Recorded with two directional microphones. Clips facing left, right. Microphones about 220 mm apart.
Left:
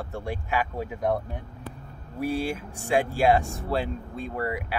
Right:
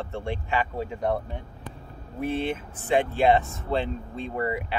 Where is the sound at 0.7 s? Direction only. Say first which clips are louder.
Even; 5° left (ahead or behind).